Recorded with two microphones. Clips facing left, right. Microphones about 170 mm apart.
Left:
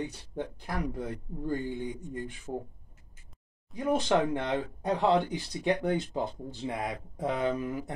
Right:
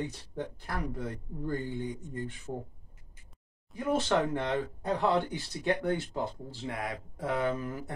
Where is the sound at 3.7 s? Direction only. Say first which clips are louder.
Left 2 dB; 15° left (ahead or behind).